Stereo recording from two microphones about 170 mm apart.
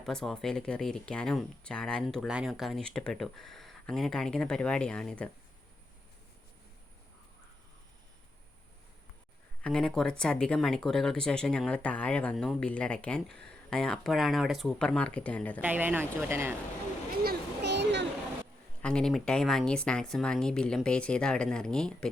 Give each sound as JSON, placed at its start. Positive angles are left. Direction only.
{"t": 0.0, "sound": "speech", "side_deg": 5}
{"t": 9.6, "sound": "speech", "side_deg": 5}
{"t": 15.6, "sound": "speech", "side_deg": -10}
{"t": 17.2, "sound": "a sound", "side_deg": -85}
{"t": 18.8, "sound": "speech", "side_deg": 5}